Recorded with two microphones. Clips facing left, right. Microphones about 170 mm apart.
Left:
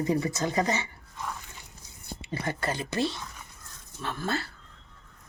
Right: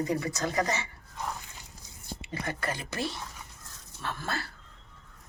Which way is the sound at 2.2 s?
30° left (ahead or behind).